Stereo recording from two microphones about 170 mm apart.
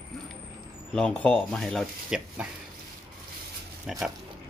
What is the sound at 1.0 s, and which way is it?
Speech, 5° left (ahead or behind).